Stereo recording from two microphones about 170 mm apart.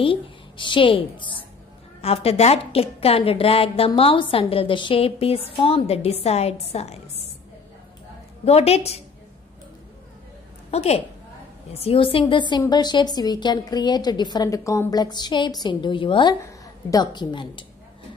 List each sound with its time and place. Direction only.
0.0 s a woman's voice: 30° left (ahead or behind)
8.5 s a woman's voice: 35° left (ahead or behind)
10.7 s a woman's voice: 40° left (ahead or behind)